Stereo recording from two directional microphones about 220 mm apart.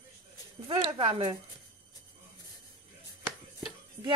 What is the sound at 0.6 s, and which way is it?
Speech, 25° right (ahead or behind).